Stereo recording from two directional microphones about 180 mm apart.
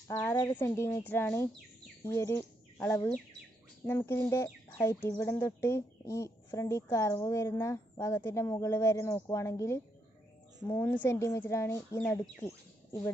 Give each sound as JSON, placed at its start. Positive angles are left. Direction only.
{"t": 0.1, "sound": "speech", "side_deg": 15}